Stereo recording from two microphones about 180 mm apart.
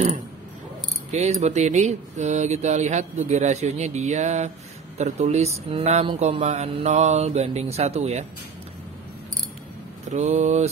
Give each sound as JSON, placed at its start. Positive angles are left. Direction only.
{"t": 1.1, "sound": "speech", "side_deg": -40}
{"t": 10.0, "sound": "speech", "side_deg": -40}